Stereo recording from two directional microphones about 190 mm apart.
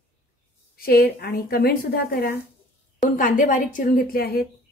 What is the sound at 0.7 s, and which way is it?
A woman's voice, 55° left (ahead or behind).